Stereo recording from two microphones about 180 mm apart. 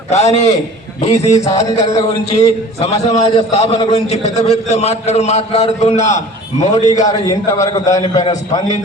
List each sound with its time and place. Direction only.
0.1 s a man's voice: 40° left (ahead or behind)
7.1 s a man's voice: 20° left (ahead or behind)